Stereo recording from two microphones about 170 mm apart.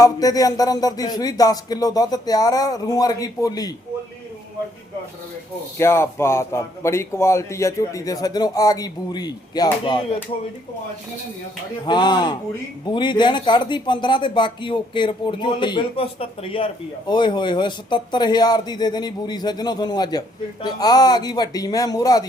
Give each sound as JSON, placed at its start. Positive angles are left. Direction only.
{"t": 0.0, "sound": "a man's voice", "side_deg": 20}
{"t": 5.7, "sound": "a man's voice", "side_deg": 15}
{"t": 11.9, "sound": "a man's voice", "side_deg": 25}